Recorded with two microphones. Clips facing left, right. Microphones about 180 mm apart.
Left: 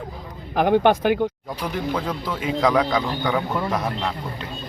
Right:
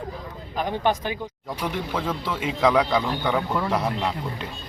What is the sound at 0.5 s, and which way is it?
Speech, 75° left (ahead or behind).